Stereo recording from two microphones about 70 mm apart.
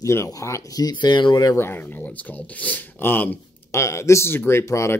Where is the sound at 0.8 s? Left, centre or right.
Left.